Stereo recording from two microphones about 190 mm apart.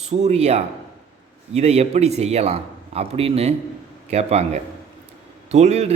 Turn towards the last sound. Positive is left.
turn(degrees=-35)  # may be behind; listen again after turning